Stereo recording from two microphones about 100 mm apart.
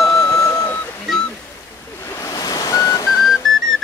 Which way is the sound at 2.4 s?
40° left (ahead or behind).